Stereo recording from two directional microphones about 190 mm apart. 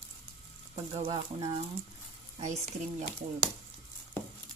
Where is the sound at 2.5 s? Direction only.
35° right (ahead or behind).